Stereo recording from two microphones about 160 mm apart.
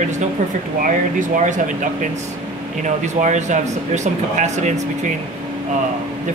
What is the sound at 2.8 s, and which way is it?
Speech, 50° right (ahead or behind).